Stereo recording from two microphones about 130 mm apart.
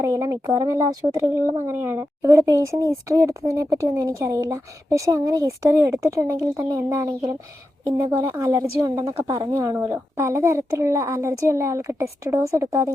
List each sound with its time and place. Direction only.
0.0 s speech: 25° right (ahead or behind)